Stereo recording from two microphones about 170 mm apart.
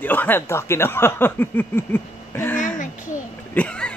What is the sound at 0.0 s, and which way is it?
Speech, 10° left (ahead or behind).